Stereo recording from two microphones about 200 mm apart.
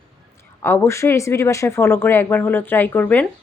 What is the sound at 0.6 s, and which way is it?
Speech, 10° left (ahead or behind).